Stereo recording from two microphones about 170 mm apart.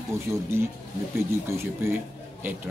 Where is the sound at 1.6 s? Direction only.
15° right (ahead or behind).